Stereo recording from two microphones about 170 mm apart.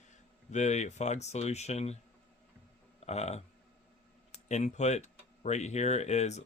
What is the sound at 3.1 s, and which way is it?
Speech, 40° left (ahead or behind).